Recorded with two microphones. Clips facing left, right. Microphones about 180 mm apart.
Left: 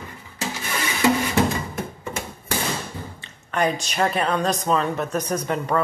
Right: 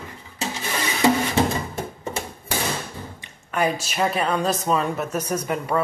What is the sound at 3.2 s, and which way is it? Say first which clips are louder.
Speech: even; 5° right (ahead or behind).